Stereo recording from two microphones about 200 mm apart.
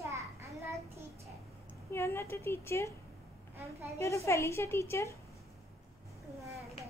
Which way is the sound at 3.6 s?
15° right (ahead or behind).